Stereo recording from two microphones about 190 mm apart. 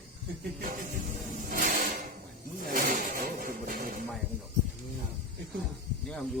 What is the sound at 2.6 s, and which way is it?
Vehicle, 45° right (ahead or behind).